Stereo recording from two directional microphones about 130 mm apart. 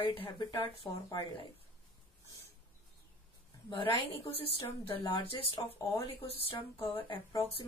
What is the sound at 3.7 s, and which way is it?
A woman's voice, 40° left (ahead or behind).